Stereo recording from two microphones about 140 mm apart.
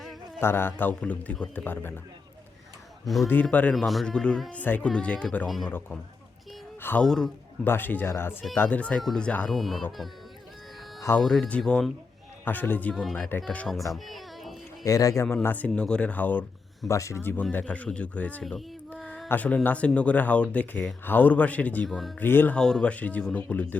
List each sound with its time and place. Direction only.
0.3 s speech: 15° left (ahead or behind)
3.2 s speech: 10° left (ahead or behind)
6.8 s a man's voice: 10° left (ahead or behind)
11.2 s speech: 5° left (ahead or behind)
13.9 s a sound: centre (ahead or behind)
14.8 s speech: 25° left (ahead or behind)
21.8 s speech: centre (ahead or behind)
22.2 s speech: 15° left (ahead or behind)